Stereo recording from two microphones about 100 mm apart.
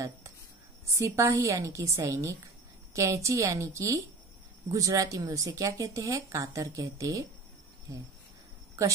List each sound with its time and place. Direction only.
0.9 s speech: 30° right (ahead or behind)